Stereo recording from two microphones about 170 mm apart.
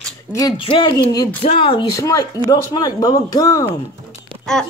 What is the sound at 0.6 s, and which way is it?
Speech, 30° left (ahead or behind).